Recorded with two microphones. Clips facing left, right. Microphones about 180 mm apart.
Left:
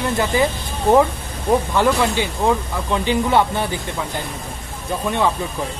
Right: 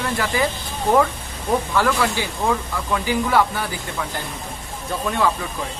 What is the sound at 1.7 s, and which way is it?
Speech, 20° left (ahead or behind).